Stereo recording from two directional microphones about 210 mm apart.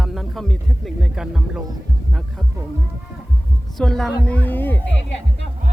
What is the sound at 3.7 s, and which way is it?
Speech, 5° left (ahead or behind).